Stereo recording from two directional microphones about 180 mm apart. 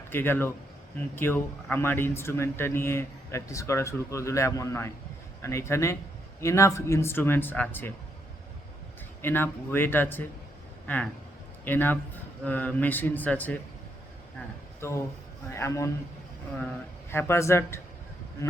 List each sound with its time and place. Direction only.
0.1 s speech: 10° left (ahead or behind)
9.2 s speech: 10° left (ahead or behind)
14.8 s speech: 15° left (ahead or behind)
17.1 s speech: 15° left (ahead or behind)